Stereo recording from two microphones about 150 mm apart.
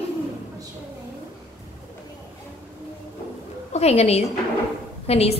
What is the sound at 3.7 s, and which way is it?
A woman's voice, 45° left (ahead or behind).